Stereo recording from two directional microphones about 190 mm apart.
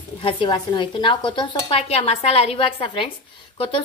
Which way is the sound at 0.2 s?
25° left (ahead or behind).